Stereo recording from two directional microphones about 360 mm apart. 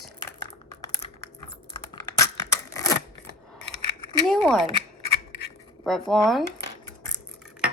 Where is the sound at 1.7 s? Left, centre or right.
Centre.